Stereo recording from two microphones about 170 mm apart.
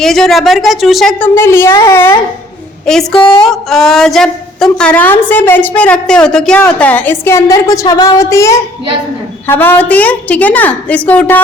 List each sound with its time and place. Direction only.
0.0 s speech: centre (ahead or behind)
1.4 s a woman's voice: 15° left (ahead or behind)
2.8 s a woman's voice: 5° left (ahead or behind)